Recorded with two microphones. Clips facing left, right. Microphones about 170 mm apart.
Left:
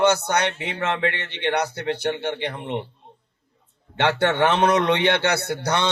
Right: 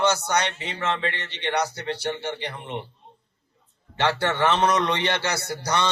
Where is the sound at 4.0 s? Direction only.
60° left (ahead or behind).